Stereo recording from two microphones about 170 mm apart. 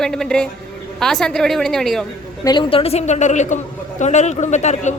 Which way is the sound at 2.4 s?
25° left (ahead or behind).